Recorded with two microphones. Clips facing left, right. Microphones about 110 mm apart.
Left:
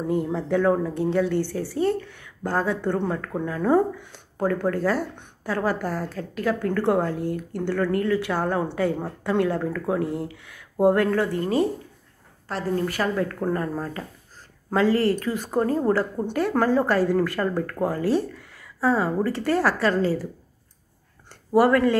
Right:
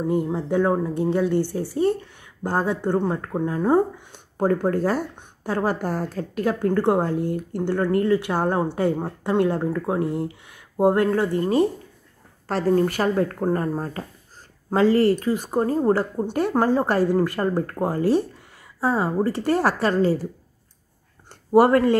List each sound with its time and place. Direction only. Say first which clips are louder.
0.3 s speech: even; 20° right (ahead or behind)
2.8 s a woman's voice: right 2 dB; 30° right (ahead or behind)
15.3 s speech: right 1 dB; 10° right (ahead or behind)
15.6 s a woman's voice: right 1 dB; 20° right (ahead or behind)
21.3 s a sound: right 3 dB; 25° right (ahead or behind)